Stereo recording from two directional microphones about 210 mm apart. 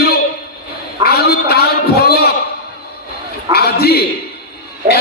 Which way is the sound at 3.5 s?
50° left (ahead or behind).